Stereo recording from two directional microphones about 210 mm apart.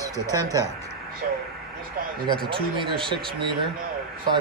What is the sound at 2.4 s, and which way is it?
Speech, 25° right (ahead or behind).